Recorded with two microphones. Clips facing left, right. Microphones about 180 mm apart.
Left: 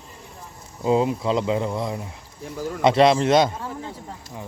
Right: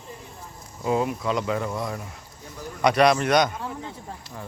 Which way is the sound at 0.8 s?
20° left (ahead or behind).